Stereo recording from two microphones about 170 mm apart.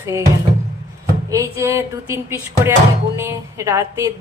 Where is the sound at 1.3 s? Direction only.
15° right (ahead or behind).